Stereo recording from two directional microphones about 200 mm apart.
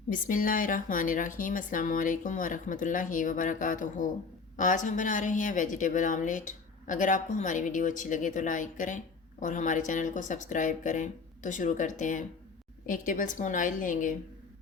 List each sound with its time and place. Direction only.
0.1 s speech: 40° left (ahead or behind)